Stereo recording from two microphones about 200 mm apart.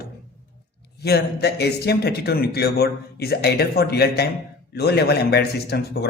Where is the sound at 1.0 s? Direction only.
55° left (ahead or behind).